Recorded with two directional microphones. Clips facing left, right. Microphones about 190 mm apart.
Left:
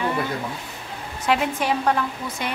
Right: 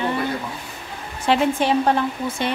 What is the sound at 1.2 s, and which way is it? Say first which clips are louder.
Speech: right 4 dB; 30° right (ahead or behind).